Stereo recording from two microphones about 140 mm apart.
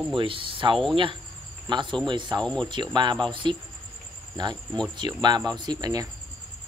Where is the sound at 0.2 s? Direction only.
40° right (ahead or behind).